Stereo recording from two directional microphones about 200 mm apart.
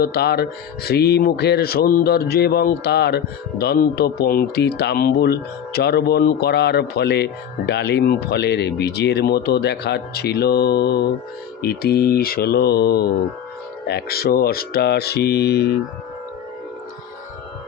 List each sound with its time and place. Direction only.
0.0 s speech: 50° left (ahead or behind)